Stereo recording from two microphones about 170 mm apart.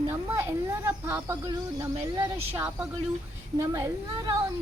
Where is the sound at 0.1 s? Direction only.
15° right (ahead or behind).